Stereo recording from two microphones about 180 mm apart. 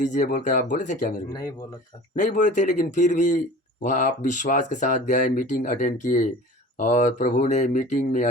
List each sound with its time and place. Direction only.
0.0 s speech: 45° left (ahead or behind)